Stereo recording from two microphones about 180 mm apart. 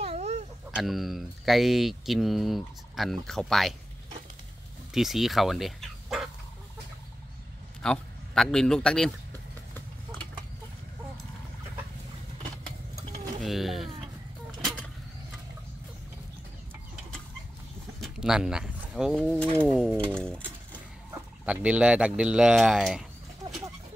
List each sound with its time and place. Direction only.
0.0 s a sound: 35° right (ahead or behind)
0.7 s speech: centre (ahead or behind)
4.9 s speech: centre (ahead or behind)
7.8 s speech: 5° left (ahead or behind)
13.4 s mechanisms: centre (ahead or behind)
18.0 s speech: 5° right (ahead or behind)